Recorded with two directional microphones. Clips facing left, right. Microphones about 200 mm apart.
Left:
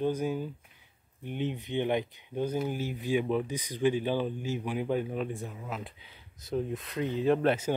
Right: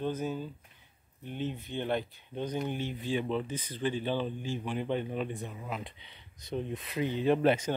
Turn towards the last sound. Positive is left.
turn(degrees=0)  # may be behind; listen again after turning